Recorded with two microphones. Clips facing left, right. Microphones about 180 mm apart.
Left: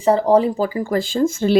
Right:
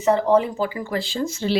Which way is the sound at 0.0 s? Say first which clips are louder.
Left 3 dB; 35° left (ahead or behind).